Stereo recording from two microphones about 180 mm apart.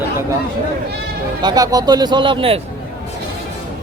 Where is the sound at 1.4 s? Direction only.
20° right (ahead or behind).